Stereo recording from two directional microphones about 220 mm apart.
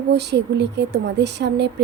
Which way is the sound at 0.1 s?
50° right (ahead or behind).